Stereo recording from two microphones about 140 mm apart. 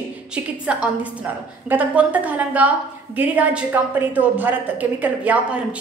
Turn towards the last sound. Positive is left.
turn(degrees=-10)  # may be behind; listen again after turning